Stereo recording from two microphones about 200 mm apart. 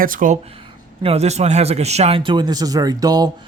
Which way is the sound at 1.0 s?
30° right (ahead or behind).